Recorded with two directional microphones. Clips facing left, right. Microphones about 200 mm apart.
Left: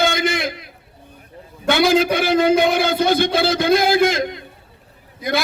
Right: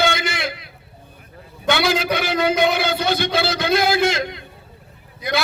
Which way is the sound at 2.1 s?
50° left (ahead or behind).